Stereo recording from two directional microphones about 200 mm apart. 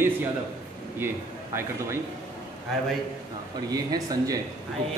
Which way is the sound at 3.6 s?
20° right (ahead or behind).